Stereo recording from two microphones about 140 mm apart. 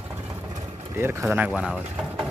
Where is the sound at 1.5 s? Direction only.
5° right (ahead or behind).